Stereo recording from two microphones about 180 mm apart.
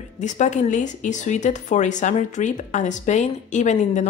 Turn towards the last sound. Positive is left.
turn(degrees=40)  # may be behind; listen again after turning